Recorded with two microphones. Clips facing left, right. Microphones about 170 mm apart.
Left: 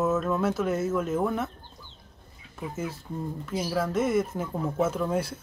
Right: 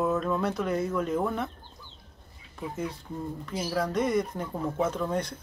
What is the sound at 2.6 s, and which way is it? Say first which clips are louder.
Speech: even; 5° left (ahead or behind).